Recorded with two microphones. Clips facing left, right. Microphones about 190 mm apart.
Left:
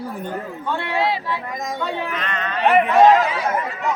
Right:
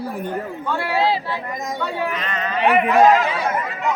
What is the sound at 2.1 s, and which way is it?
Speech, 5° right (ahead or behind).